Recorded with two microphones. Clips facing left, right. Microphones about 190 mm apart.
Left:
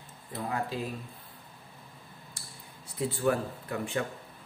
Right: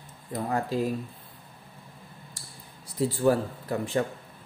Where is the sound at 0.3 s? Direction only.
40° right (ahead or behind).